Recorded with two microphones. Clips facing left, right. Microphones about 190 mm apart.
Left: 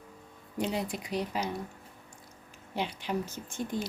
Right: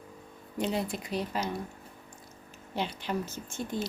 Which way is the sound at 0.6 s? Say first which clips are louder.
Right 1 dB; 15° left (ahead or behind).